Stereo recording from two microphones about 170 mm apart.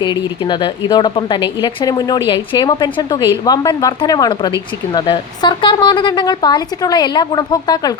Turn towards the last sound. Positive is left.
turn(degrees=25)  # may be behind; listen again after turning